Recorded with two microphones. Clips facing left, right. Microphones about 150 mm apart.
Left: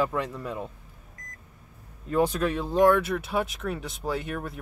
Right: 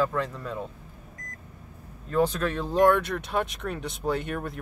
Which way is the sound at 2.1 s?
10° left (ahead or behind).